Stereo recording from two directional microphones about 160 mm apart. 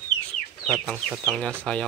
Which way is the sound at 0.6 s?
5° left (ahead or behind).